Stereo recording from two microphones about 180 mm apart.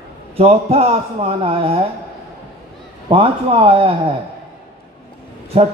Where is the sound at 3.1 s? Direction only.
30° right (ahead or behind).